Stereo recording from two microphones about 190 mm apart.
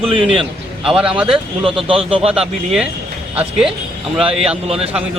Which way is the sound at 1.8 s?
30° right (ahead or behind).